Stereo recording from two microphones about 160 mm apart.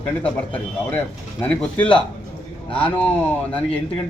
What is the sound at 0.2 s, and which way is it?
A man's voice, 10° left (ahead or behind).